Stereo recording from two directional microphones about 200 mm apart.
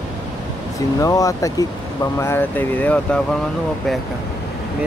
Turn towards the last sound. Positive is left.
turn(degrees=5)  # may be behind; listen again after turning